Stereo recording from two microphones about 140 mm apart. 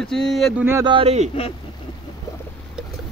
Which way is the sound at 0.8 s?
35° right (ahead or behind).